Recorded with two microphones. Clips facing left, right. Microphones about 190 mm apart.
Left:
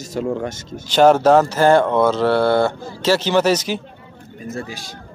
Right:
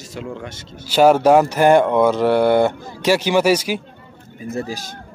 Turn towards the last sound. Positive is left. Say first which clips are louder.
# right 4 dB
turn(degrees=-40)  # may be behind; listen again after turning